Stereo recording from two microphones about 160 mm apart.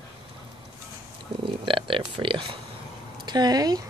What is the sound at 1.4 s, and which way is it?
Speech, 35° right (ahead or behind).